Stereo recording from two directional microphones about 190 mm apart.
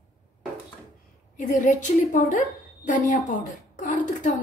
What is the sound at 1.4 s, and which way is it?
A woman's voice, 40° left (ahead or behind).